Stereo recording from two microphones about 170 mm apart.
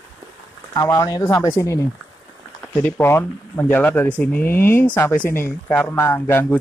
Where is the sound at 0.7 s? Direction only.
20° left (ahead or behind).